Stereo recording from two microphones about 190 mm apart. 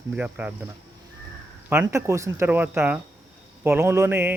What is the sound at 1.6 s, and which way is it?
Speech, 15° right (ahead or behind).